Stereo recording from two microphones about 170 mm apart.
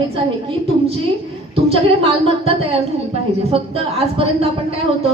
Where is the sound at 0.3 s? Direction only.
30° right (ahead or behind).